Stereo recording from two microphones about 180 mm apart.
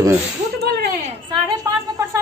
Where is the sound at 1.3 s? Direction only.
20° right (ahead or behind).